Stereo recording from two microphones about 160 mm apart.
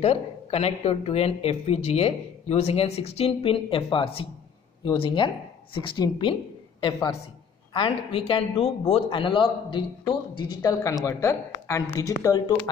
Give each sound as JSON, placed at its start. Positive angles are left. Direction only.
{"t": 0.0, "sound": "a man's voice", "side_deg": 40}